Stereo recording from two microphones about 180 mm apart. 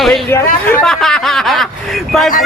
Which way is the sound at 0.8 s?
Centre (ahead or behind).